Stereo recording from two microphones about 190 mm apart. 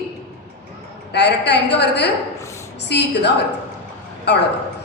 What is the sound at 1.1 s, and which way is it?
A woman's voice, 65° left (ahead or behind).